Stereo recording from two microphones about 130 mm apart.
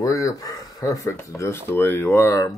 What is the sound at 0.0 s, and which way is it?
Speech, 25° left (ahead or behind).